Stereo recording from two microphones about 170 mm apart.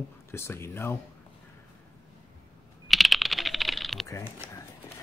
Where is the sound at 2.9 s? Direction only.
Centre (ahead or behind).